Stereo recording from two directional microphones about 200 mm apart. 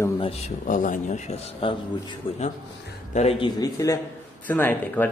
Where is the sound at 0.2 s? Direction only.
30° left (ahead or behind).